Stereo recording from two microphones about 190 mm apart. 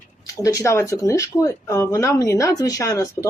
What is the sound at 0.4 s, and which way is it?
Speech, 15° left (ahead or behind).